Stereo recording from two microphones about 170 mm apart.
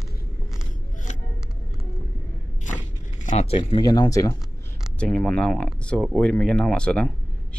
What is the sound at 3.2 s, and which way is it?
Speech, 40° left (ahead or behind).